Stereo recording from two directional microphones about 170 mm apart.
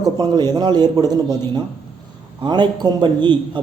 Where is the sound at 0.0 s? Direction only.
25° right (ahead or behind).